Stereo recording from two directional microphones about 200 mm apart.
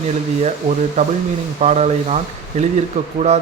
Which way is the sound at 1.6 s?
35° right (ahead or behind).